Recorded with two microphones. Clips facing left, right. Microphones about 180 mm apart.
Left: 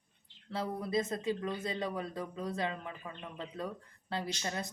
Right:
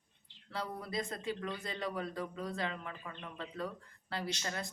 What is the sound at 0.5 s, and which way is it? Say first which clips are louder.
Speech: left 5 dB; 25° left (ahead or behind).